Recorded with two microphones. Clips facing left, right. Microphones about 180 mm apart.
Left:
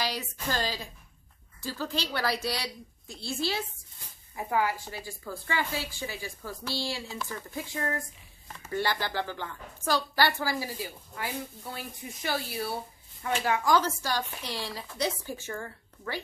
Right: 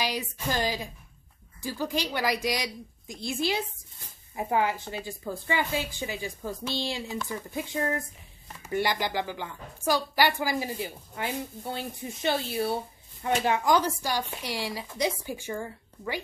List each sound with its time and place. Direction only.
0.0 s a woman's voice: 15° right (ahead or behind)